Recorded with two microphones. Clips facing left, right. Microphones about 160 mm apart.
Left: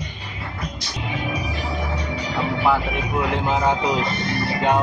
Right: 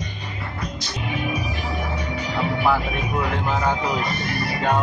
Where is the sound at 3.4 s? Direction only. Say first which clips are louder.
Left 2 dB; 20° left (ahead or behind).